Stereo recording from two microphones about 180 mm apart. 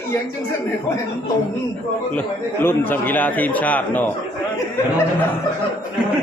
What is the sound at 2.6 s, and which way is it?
A man's voice, 10° left (ahead or behind).